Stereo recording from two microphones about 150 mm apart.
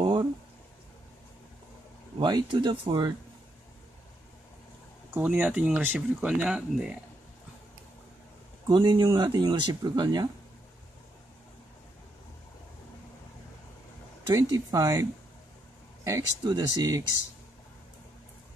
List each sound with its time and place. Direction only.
0.0 s a sound: 30° right (ahead or behind)
2.1 s speech: 30° right (ahead or behind)
5.1 s speech: 10° right (ahead or behind)
8.6 s speech: 30° right (ahead or behind)
14.2 s speech: 20° right (ahead or behind)